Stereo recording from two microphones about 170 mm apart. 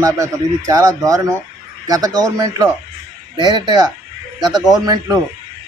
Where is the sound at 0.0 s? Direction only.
20° right (ahead or behind).